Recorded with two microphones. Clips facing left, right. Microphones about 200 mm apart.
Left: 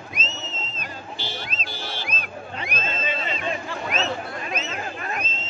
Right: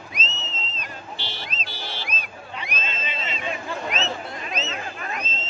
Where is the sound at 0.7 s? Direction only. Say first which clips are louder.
Left 1 dB; 50° left (ahead or behind).